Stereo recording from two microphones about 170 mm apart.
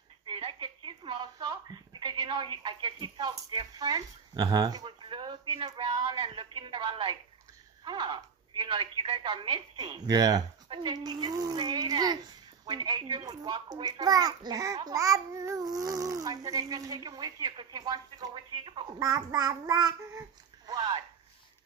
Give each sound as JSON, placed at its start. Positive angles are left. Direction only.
{"t": 0.3, "sound": "a child's voice", "side_deg": -30}